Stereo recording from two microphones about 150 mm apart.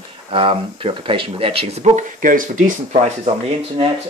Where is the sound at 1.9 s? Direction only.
65° right (ahead or behind).